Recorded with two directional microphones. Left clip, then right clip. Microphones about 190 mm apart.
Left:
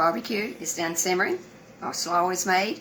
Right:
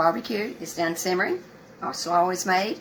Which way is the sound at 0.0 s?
15° right (ahead or behind).